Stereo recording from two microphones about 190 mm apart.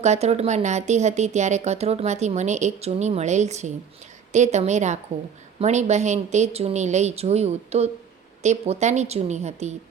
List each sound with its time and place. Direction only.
0.0 s speech: 35° right (ahead or behind)